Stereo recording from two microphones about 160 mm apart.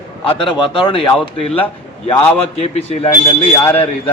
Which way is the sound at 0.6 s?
30° left (ahead or behind).